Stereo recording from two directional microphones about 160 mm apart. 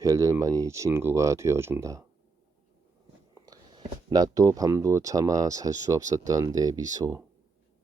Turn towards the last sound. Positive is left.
turn(degrees=-20)  # may be behind; listen again after turning